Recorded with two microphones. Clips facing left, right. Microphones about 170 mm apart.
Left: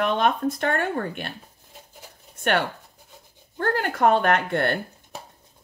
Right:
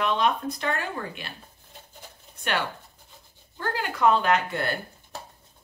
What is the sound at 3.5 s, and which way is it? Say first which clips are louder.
Speech: left 5 dB; 55° left (ahead or behind).